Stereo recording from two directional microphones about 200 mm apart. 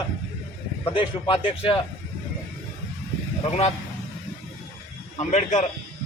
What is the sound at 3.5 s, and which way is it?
Speech, 30° left (ahead or behind).